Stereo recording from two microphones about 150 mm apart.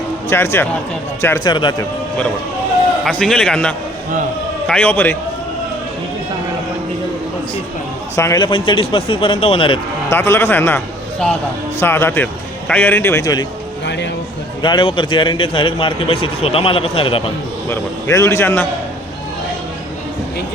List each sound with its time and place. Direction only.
0.3 s speech: 15° left (ahead or behind)
1.5 s a man's voice: 30° left (ahead or behind)
3.0 s a man's voice: 5° left (ahead or behind)
8.1 s a man's voice: 20° left (ahead or behind)
8.4 s a man's voice: 35° left (ahead or behind)
10.1 s a man's voice: 15° left (ahead or behind)
14.6 s a man's voice: 30° left (ahead or behind)
17.7 s speech: 20° left (ahead or behind)